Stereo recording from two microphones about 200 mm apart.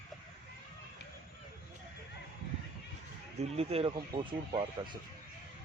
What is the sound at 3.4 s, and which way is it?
Speech, 30° right (ahead or behind).